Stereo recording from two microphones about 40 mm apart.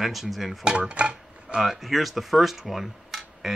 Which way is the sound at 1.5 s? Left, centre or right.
Centre.